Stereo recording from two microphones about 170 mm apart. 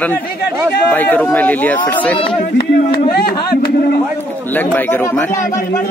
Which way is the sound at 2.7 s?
65° left (ahead or behind).